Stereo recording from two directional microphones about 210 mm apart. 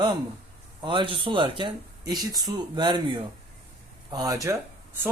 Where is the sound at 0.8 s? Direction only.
25° right (ahead or behind).